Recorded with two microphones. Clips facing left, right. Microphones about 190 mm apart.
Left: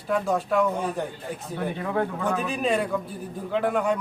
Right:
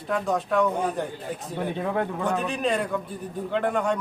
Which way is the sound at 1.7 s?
20° right (ahead or behind).